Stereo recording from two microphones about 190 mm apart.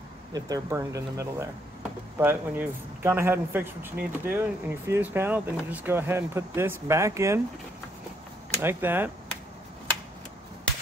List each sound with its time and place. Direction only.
0.3 s speech: 15° right (ahead or behind)
8.5 s speech: 10° right (ahead or behind)